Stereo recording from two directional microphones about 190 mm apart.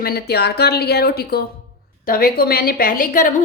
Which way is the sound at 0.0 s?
55° left (ahead or behind).